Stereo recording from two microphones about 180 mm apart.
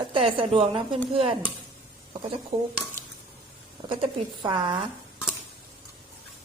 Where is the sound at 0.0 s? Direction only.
30° right (ahead or behind).